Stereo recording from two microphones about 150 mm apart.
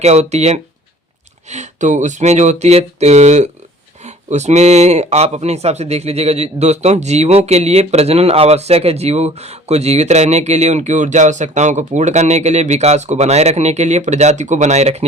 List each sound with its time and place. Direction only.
0.0 s speech: 45° right (ahead or behind)